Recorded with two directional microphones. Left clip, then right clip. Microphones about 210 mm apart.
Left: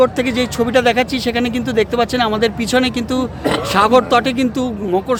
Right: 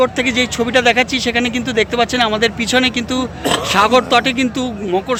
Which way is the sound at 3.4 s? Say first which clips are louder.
Right 2 dB; 20° right (ahead or behind).